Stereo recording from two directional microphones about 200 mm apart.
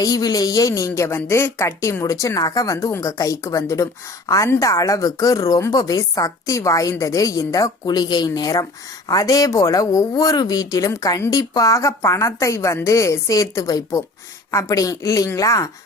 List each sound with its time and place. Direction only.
0.0 s speech: 20° left (ahead or behind)